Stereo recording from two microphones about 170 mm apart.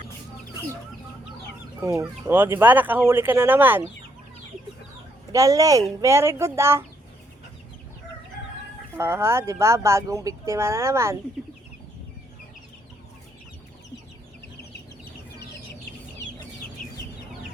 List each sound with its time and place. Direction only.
1.8 s speech: 20° right (ahead or behind)
5.3 s speech: 20° right (ahead or behind)
9.0 s speech: 15° right (ahead or behind)
16.8 s chicken: 55° left (ahead or behind)